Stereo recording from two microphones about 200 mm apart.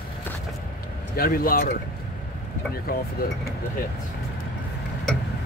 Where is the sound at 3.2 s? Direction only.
45° left (ahead or behind).